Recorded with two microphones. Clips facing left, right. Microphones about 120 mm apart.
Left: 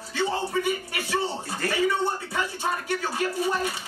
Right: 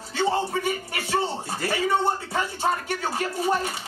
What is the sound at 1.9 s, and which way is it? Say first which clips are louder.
Speech: right 3 dB; 25° right (ahead or behind).